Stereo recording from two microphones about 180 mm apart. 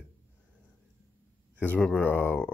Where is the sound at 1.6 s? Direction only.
5° left (ahead or behind).